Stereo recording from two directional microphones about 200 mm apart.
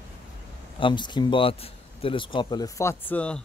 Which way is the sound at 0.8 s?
25° left (ahead or behind).